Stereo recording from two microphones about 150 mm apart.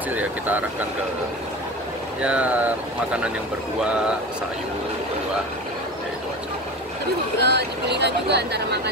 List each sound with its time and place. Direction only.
0.1 s speech: 10° right (ahead or behind)
2.2 s speech: 10° right (ahead or behind)
7.3 s speech: 90° right